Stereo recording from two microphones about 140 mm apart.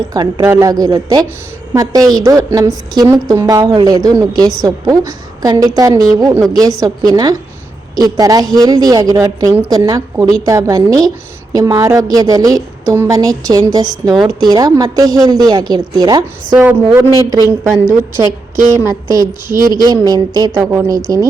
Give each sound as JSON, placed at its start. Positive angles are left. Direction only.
{"t": 0.1, "sound": "a woman's voice", "side_deg": -25}
{"t": 16.6, "sound": "a woman's voice", "side_deg": -15}
{"t": 18.5, "sound": "a woman's voice", "side_deg": -65}
{"t": 19.1, "sound": "a woman's voice", "side_deg": -25}
{"t": 20.6, "sound": "a woman's voice", "side_deg": -20}